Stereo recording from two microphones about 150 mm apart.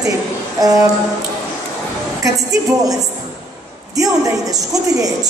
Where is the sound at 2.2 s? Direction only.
20° right (ahead or behind).